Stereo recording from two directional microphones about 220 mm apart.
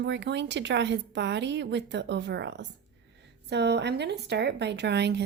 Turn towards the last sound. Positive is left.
turn(degrees=-50)  # may be behind; listen again after turning